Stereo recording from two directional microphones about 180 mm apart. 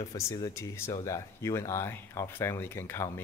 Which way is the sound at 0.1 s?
20° left (ahead or behind).